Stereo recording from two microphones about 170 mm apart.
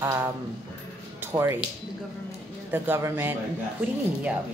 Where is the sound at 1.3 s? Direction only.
15° right (ahead or behind).